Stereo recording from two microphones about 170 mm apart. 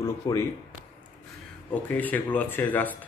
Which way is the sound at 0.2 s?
20° left (ahead or behind).